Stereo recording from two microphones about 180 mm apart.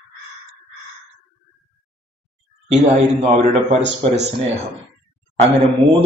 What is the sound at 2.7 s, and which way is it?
A man's voice, 40° right (ahead or behind).